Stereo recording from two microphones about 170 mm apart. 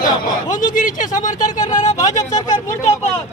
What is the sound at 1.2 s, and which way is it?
Speech, 20° left (ahead or behind).